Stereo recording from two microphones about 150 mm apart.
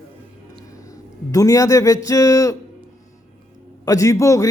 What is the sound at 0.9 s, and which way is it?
A man's voice, 20° left (ahead or behind).